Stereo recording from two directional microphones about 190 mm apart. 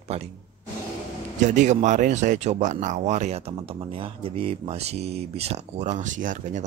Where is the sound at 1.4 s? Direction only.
40° right (ahead or behind).